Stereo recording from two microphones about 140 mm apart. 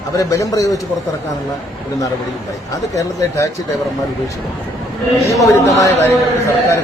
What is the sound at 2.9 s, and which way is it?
Speech, 25° left (ahead or behind).